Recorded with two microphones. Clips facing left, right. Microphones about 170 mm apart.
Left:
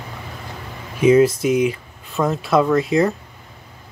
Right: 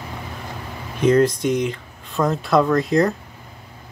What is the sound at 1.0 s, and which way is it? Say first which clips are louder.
Speech: left 3 dB; 5° left (ahead or behind).